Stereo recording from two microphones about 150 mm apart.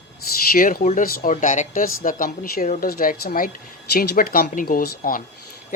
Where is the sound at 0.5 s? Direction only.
70° left (ahead or behind).